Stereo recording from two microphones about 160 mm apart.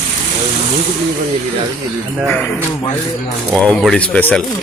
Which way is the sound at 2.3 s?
10° left (ahead or behind).